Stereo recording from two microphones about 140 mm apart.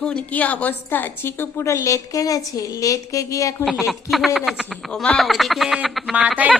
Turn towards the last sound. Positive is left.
turn(degrees=-10)  # may be behind; listen again after turning